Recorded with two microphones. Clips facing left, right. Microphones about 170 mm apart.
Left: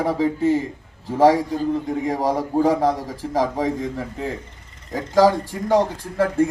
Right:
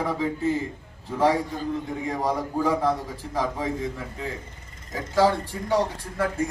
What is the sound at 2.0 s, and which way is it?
Speech, 40° left (ahead or behind).